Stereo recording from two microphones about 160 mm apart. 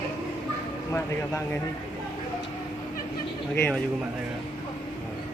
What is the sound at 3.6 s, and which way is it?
Speech, 10° left (ahead or behind).